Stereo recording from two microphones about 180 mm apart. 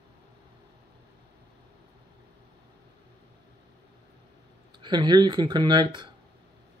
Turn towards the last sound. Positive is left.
turn(degrees=-25)  # may be behind; listen again after turning